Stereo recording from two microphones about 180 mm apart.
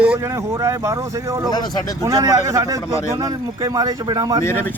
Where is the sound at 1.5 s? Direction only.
20° left (ahead or behind).